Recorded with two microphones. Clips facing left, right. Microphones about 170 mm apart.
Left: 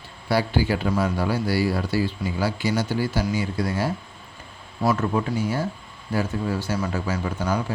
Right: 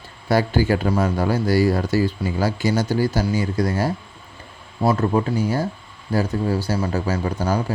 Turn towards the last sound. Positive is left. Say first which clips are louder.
# right 3 dB
turn(degrees=-35)  # may be behind; listen again after turning